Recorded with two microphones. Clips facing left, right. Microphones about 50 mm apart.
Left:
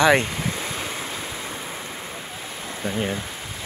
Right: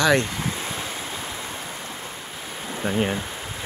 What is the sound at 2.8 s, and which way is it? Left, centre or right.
Speech, centre.